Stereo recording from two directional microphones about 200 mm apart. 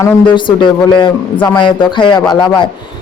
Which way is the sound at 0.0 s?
25° left (ahead or behind).